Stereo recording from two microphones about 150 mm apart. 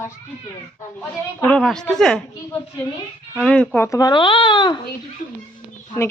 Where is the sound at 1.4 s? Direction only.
5° left (ahead or behind).